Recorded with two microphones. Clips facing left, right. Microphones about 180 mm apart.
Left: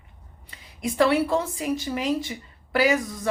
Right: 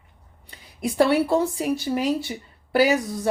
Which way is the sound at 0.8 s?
35° right (ahead or behind).